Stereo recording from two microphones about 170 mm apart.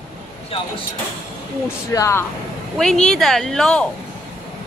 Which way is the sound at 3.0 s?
5° left (ahead or behind).